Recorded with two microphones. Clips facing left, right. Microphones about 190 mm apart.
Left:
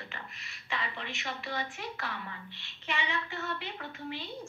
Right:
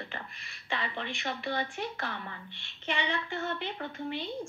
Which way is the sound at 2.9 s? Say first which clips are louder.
Right 3 dB; 30° right (ahead or behind).